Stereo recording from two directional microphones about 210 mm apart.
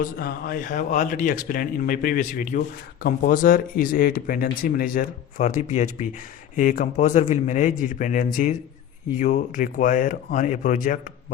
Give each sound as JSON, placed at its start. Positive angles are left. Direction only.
{"t": 0.0, "sound": "speech", "side_deg": 45}